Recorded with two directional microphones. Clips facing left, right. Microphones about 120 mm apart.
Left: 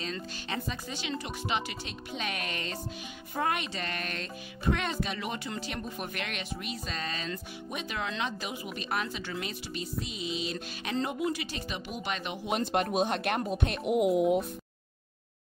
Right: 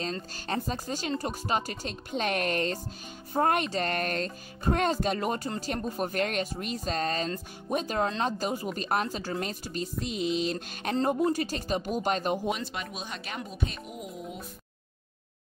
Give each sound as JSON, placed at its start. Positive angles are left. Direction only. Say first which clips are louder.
{"t": 0.0, "sound": "speech", "louder": "right 3 dB", "side_deg": -40}
{"t": 12.4, "sound": "speech", "louder": "left 4 dB", "side_deg": 55}